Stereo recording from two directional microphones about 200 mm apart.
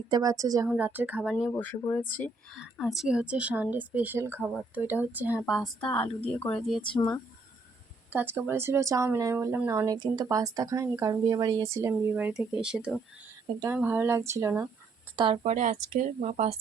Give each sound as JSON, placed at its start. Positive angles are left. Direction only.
{"t": 0.1, "sound": "speech", "side_deg": -15}
{"t": 1.5, "sound": "speech", "side_deg": 10}
{"t": 2.6, "sound": "speech", "side_deg": 0}
{"t": 6.9, "sound": "speech", "side_deg": 20}
{"t": 8.1, "sound": "speech", "side_deg": -10}
{"t": 15.1, "sound": "a woman's voice", "side_deg": -25}